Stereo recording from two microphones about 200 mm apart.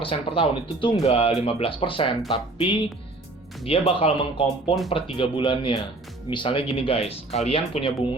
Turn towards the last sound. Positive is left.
turn(degrees=30)  # may be behind; listen again after turning